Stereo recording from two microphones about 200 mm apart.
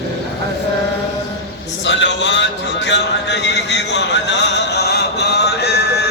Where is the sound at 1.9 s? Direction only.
65° left (ahead or behind).